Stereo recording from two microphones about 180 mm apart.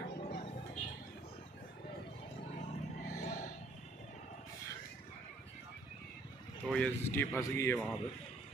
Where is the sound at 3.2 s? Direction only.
45° left (ahead or behind).